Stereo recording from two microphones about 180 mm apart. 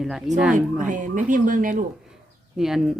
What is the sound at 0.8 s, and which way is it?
Speech, 45° right (ahead or behind).